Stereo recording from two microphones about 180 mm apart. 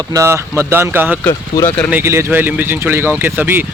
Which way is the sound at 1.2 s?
15° left (ahead or behind).